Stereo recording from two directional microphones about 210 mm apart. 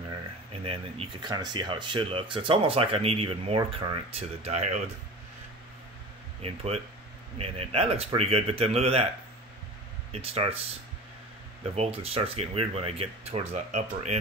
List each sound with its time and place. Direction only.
0.7 s speech: 25° right (ahead or behind)
6.4 s speech: 30° right (ahead or behind)
10.1 s speech: 30° right (ahead or behind)
11.7 s speech: 30° right (ahead or behind)